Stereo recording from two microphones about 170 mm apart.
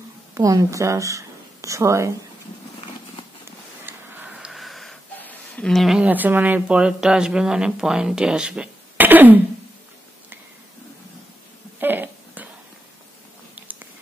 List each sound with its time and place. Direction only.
0.3 s a woman's voice: 20° right (ahead or behind)
3.8 s wheeze: 10° right (ahead or behind)
11.8 s a sound: 10° right (ahead or behind)
13.6 s biting: 10° right (ahead or behind)